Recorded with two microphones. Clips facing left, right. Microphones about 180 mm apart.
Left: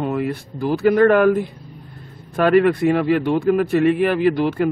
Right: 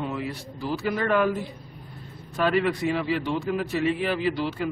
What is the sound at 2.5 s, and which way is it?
Speech, 55° left (ahead or behind).